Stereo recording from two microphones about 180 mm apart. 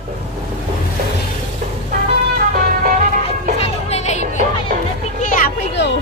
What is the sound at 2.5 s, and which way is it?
Music, 55° right (ahead or behind).